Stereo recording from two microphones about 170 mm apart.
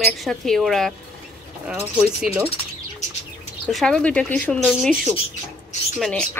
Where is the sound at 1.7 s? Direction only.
10° right (ahead or behind).